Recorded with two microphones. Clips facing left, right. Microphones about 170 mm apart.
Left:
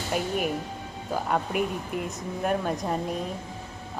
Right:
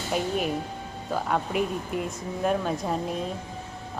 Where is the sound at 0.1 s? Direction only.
5° left (ahead or behind).